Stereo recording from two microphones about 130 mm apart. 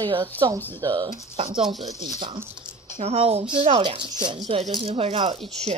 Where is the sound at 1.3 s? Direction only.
45° right (ahead or behind).